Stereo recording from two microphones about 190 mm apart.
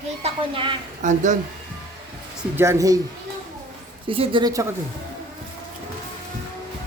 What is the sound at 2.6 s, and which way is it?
Speech, 15° right (ahead or behind).